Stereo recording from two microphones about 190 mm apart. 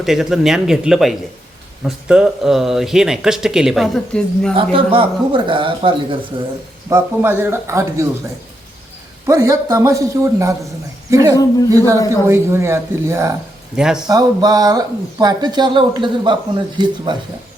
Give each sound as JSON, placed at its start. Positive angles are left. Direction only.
{"t": 0.0, "sound": "speech", "side_deg": 0}
{"t": 4.5, "sound": "speech", "side_deg": -30}
{"t": 6.9, "sound": "a man's voice", "side_deg": -10}
{"t": 9.2, "sound": "a man's voice", "side_deg": -15}
{"t": 13.7, "sound": "speech", "side_deg": -5}
{"t": 14.1, "sound": "speech", "side_deg": -20}